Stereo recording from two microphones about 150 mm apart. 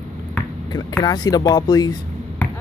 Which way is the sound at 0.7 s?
25° left (ahead or behind).